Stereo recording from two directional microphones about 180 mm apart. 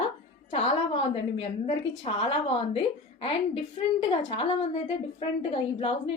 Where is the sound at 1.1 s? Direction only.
30° left (ahead or behind).